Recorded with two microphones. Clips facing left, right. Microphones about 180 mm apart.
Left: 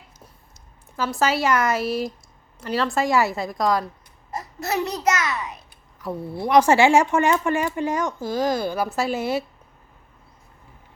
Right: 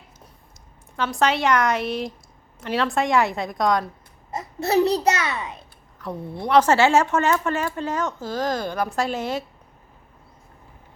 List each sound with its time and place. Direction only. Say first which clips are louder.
0.9 s a woman's voice: even; 5° left (ahead or behind)
4.3 s a child's voice: right 4 dB; 25° right (ahead or behind)
6.0 s speech: left 2 dB; 5° left (ahead or behind)